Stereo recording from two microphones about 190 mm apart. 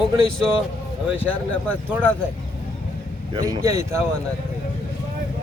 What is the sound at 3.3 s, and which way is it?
Speech, 20° right (ahead or behind).